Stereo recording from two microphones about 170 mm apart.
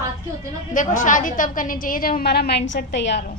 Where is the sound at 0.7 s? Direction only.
50° left (ahead or behind).